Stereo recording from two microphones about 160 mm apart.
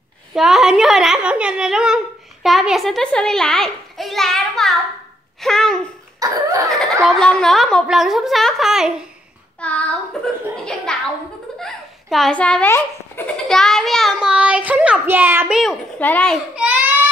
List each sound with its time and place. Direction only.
0.3 s a woman's voice: centre (ahead or behind)
6.1 s laughter: 20° right (ahead or behind)
6.7 s laughter: centre (ahead or behind)
7.1 s a woman's voice: 5° left (ahead or behind)
9.6 s child singing: 10° left (ahead or behind)
10.2 s a woman's voice: 5° left (ahead or behind)
11.6 s giggle: centre (ahead or behind)
13.5 s child singing: centre (ahead or behind)
16.0 s a child's voice: 10° left (ahead or behind)
16.5 s baby cry: 10° right (ahead or behind)